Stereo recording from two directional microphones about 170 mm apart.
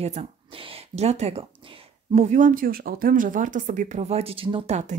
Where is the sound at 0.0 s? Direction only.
40° right (ahead or behind).